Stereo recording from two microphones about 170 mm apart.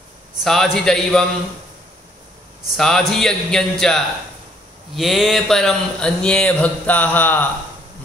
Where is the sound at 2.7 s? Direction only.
Centre (ahead or behind).